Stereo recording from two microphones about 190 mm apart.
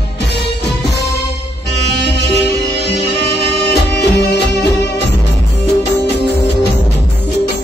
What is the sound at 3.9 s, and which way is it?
Music, 65° left (ahead or behind).